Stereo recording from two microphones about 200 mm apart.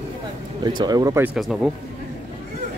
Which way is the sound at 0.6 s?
20° right (ahead or behind).